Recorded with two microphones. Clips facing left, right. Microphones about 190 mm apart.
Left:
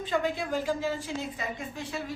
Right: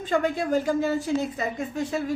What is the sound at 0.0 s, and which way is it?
A woman's voice, 45° right (ahead or behind).